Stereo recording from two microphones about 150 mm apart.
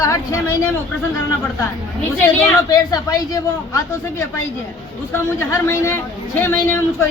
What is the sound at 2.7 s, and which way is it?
A woman's voice, 25° left (ahead or behind).